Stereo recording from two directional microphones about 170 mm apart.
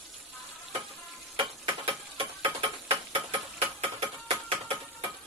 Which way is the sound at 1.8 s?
35° right (ahead or behind).